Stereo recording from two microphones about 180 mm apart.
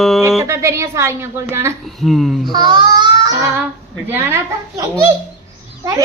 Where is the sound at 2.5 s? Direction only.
25° right (ahead or behind).